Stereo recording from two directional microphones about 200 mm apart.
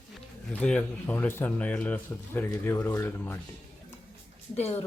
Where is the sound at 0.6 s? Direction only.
5° left (ahead or behind).